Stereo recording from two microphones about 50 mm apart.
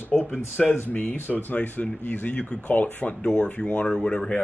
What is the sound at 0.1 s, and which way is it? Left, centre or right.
Speech, centre.